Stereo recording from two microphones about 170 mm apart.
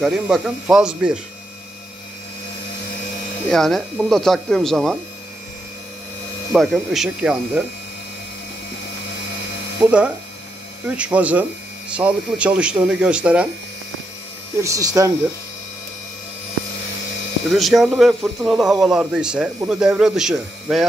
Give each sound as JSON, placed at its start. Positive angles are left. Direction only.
{"t": 0.0, "sound": "speech", "side_deg": -5}
{"t": 3.4, "sound": "speech", "side_deg": 0}
{"t": 6.5, "sound": "speech", "side_deg": 0}
{"t": 9.8, "sound": "speech", "side_deg": -5}
{"t": 14.6, "sound": "speech", "side_deg": -20}
{"t": 17.5, "sound": "speech", "side_deg": 0}